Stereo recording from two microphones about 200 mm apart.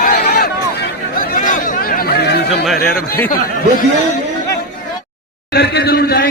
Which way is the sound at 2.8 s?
50° left (ahead or behind).